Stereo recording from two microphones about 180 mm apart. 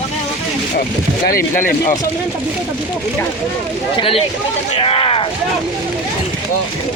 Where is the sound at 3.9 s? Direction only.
30° left (ahead or behind).